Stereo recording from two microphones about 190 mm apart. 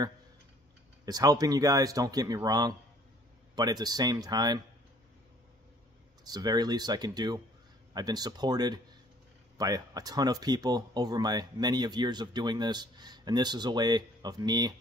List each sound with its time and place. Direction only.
1.0 s speech: 20° right (ahead or behind)
6.2 s speech: 20° right (ahead or behind)